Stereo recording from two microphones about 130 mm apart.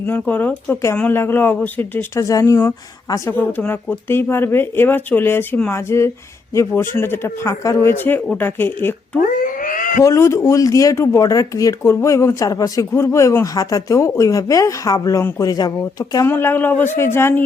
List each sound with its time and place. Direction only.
0.1 s speech: 15° left (ahead or behind)
3.2 s speech: 15° left (ahead or behind)
9.2 s cat: 90° left
10.0 s speech: 20° left (ahead or behind)
16.2 s speech: 15° left (ahead or behind)